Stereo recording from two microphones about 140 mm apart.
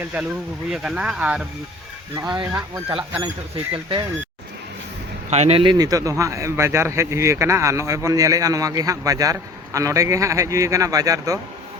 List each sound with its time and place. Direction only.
0.0 s speech: 10° right (ahead or behind)
2.1 s speech: 30° right (ahead or behind)
5.3 s speech: 50° right (ahead or behind)
5.7 s speech: 25° right (ahead or behind)